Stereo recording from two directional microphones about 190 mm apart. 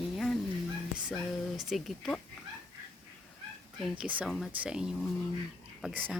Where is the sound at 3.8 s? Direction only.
5° right (ahead or behind).